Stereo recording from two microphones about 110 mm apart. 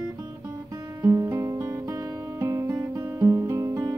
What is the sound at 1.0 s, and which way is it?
Music, 30° right (ahead or behind).